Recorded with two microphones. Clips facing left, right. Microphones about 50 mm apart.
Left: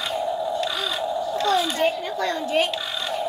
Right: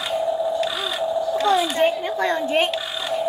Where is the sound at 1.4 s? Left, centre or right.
Right.